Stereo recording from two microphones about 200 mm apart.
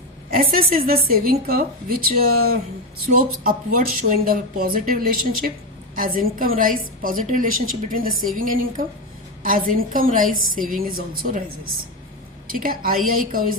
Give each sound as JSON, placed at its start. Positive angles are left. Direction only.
{"t": 0.3, "sound": "a woman's voice", "side_deg": -45}
{"t": 3.2, "sound": "a woman's voice", "side_deg": -45}
{"t": 12.5, "sound": "a woman's voice", "side_deg": -45}